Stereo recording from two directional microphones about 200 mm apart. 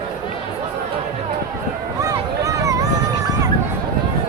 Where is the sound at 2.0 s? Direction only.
15° right (ahead or behind).